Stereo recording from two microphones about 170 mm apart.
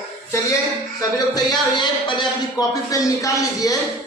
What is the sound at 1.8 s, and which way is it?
Speech, 25° left (ahead or behind).